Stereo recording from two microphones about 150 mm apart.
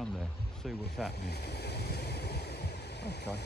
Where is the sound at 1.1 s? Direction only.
90° left.